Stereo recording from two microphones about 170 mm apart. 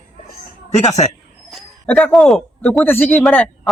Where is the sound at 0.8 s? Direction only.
40° left (ahead or behind).